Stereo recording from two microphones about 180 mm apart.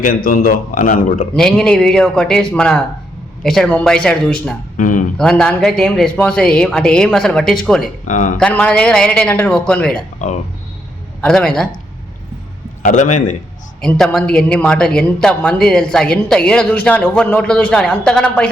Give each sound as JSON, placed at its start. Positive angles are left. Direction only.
{"t": 0.0, "sound": "speech", "side_deg": 50}
{"t": 1.4, "sound": "speech", "side_deg": 5}
{"t": 4.8, "sound": "speech", "side_deg": 45}
{"t": 5.1, "sound": "speech", "side_deg": 5}
{"t": 8.0, "sound": "speech", "side_deg": 45}
{"t": 8.4, "sound": "speech", "side_deg": 5}
{"t": 11.2, "sound": "speech", "side_deg": 5}
{"t": 12.8, "sound": "speech", "side_deg": 45}
{"t": 13.8, "sound": "speech", "side_deg": 5}